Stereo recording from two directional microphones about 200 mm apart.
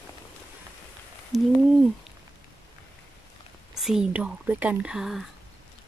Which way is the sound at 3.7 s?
Centre (ahead or behind).